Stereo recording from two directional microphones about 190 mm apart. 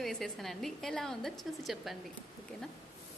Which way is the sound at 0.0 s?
Centre (ahead or behind).